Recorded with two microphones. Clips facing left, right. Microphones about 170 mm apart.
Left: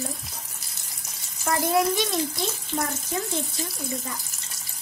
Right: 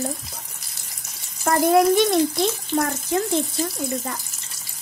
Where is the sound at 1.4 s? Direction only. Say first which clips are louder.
Right 6 dB; 55° right (ahead or behind).